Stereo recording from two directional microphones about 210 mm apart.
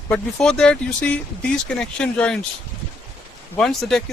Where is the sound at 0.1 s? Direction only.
5° left (ahead or behind).